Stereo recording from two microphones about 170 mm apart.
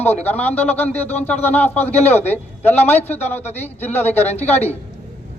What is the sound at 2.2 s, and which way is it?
Speech, 10° left (ahead or behind).